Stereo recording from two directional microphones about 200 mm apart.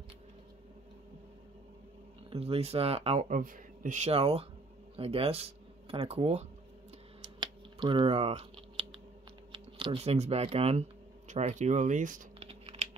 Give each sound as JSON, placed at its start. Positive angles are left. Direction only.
{"t": 2.3, "sound": "speech", "side_deg": -30}
{"t": 7.3, "sound": "computer keyboard", "side_deg": -25}
{"t": 9.5, "sound": "speech", "side_deg": -25}